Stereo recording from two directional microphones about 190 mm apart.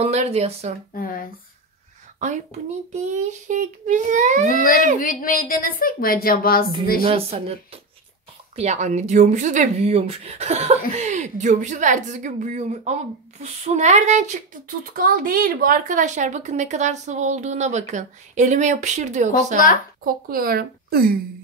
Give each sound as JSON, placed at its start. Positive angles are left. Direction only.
{"t": 0.0, "sound": "speech", "side_deg": -35}
{"t": 0.9, "sound": "a woman's voice", "side_deg": 50}
{"t": 2.1, "sound": "speech", "side_deg": -40}
{"t": 4.5, "sound": "a woman's voice", "side_deg": 45}
{"t": 7.0, "sound": "speech", "side_deg": -30}
{"t": 20.0, "sound": "speech", "side_deg": -50}